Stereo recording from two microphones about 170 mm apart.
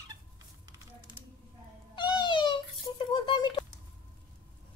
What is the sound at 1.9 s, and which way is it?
Cat, 30° left (ahead or behind).